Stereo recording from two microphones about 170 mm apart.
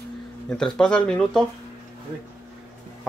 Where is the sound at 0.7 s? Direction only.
5° left (ahead or behind).